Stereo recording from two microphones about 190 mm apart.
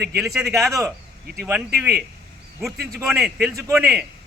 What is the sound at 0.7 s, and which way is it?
Speech, 15° right (ahead or behind).